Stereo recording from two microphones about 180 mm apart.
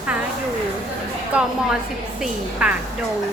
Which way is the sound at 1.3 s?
5° right (ahead or behind).